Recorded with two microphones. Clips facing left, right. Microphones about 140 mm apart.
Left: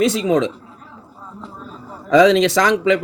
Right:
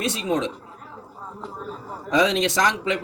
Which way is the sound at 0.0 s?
90° left.